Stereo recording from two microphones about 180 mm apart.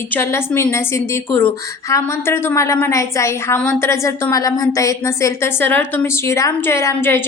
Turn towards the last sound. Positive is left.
turn(degrees=10)  # may be behind; listen again after turning